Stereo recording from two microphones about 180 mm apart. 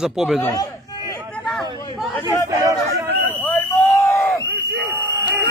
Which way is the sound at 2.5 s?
20° right (ahead or behind).